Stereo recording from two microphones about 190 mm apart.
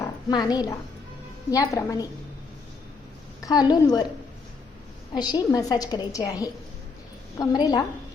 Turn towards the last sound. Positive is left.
turn(degrees=20)  # may be behind; listen again after turning